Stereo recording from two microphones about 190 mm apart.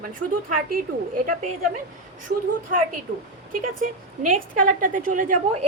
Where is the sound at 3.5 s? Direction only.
45° right (ahead or behind).